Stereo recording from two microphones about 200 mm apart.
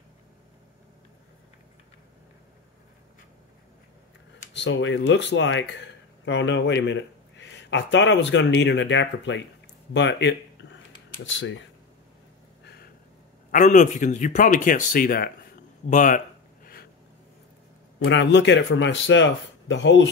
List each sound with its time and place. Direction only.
4.6 s speech: 65° left (ahead or behind)
13.5 s speech: 40° left (ahead or behind)
17.9 s speech: 65° left (ahead or behind)